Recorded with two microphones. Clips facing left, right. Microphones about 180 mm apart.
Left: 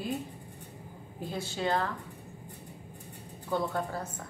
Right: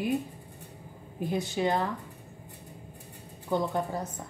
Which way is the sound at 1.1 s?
15° right (ahead or behind).